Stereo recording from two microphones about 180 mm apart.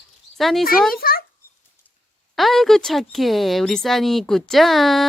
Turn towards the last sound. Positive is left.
turn(degrees=0)  # may be behind; listen again after turning